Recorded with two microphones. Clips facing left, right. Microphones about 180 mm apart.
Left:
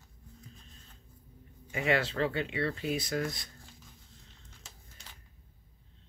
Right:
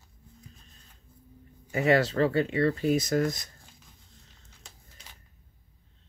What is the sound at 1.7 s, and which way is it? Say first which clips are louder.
Speech: right 6 dB; 40° right (ahead or behind).